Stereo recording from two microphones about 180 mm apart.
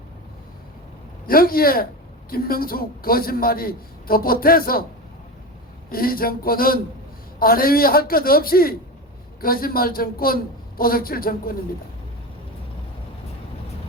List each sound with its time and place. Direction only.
1.3 s a man's voice: 55° left (ahead or behind)
5.9 s a man's voice: 55° left (ahead or behind)